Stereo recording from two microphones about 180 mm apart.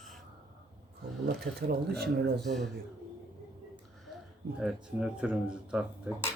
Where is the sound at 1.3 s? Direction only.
60° right (ahead or behind).